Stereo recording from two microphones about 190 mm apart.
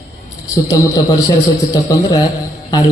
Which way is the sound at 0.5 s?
20° left (ahead or behind).